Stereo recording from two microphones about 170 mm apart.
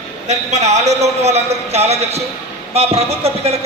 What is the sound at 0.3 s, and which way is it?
A man's voice, 40° right (ahead or behind).